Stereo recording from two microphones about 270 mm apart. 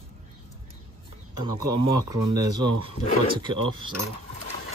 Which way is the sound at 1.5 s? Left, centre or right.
Centre.